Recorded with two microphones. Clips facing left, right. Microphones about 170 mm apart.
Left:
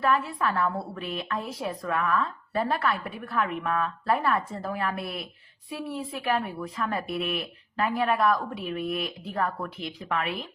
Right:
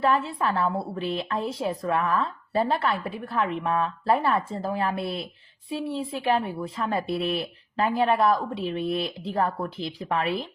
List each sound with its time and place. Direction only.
0.0 s speech: 25° right (ahead or behind)